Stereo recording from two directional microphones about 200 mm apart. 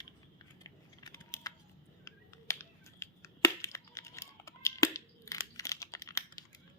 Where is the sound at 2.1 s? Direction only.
15° left (ahead or behind).